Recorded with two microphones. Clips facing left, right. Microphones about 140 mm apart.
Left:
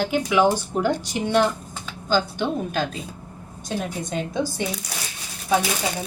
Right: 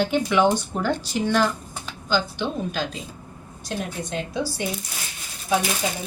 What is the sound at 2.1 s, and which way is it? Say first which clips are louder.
Speech: left 2 dB; 50° left (ahead or behind).